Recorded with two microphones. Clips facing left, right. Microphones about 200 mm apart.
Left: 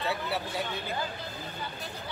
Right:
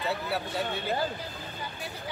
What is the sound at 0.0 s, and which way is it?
Speech, centre (ahead or behind).